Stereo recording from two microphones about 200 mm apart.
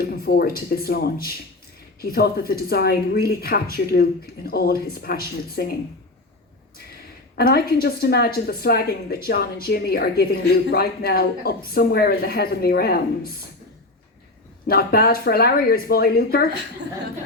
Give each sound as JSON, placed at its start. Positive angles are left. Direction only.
{"t": 0.0, "sound": "a woman's voice", "side_deg": 50}
{"t": 7.3, "sound": "a woman's voice", "side_deg": 50}
{"t": 14.7, "sound": "a woman's voice", "side_deg": 50}